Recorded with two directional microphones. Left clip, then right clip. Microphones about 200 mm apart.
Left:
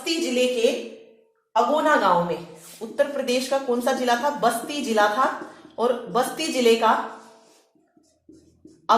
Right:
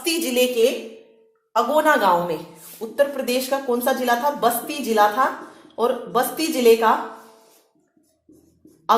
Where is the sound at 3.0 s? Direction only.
35° right (ahead or behind).